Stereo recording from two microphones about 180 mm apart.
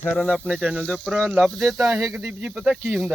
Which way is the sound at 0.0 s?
5° left (ahead or behind).